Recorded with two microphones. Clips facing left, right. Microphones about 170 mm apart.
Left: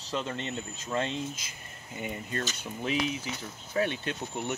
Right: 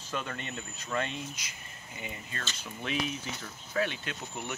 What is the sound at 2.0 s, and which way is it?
Speech, 45° left (ahead or behind).